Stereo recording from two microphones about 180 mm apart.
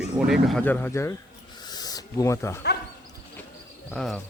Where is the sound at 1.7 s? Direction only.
20° left (ahead or behind).